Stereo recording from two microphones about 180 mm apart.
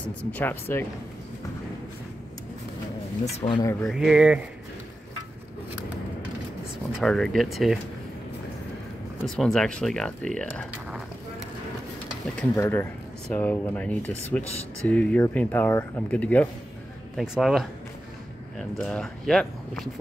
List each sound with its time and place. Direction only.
0.3 s speech: 10° left (ahead or behind)
3.3 s speech: 35° left (ahead or behind)
3.8 s speech: centre (ahead or behind)
7.0 s speech: 5° left (ahead or behind)
9.2 s speech: 5° left (ahead or behind)
12.5 s speech: 15° left (ahead or behind)